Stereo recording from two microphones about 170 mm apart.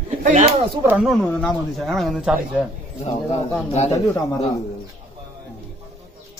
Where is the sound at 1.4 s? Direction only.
Centre (ahead or behind).